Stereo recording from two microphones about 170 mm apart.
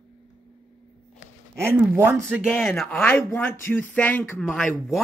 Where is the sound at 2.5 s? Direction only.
10° left (ahead or behind).